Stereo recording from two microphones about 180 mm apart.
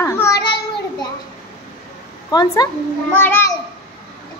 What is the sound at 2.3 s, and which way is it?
A woman's voice, 20° left (ahead or behind).